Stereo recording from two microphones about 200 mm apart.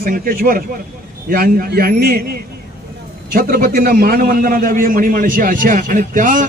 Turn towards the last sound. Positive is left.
turn(degrees=-40)  # may be behind; listen again after turning